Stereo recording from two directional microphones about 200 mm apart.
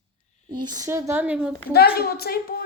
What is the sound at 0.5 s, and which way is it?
Speech, 20° right (ahead or behind).